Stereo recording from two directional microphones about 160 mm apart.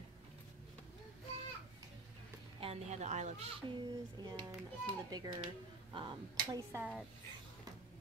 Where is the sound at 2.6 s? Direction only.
45° right (ahead or behind).